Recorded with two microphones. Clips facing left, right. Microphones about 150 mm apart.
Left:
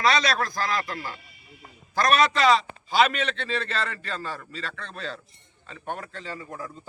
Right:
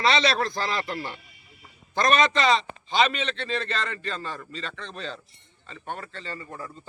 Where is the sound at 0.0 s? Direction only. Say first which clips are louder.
Right 1 dB; 25° right (ahead or behind).